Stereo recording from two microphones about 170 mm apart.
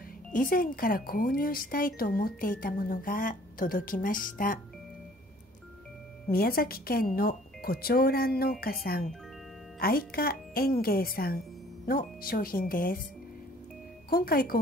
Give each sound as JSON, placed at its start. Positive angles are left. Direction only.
{"t": 0.3, "sound": "speech", "side_deg": 55}
{"t": 6.3, "sound": "speech", "side_deg": 60}
{"t": 14.1, "sound": "speech", "side_deg": 60}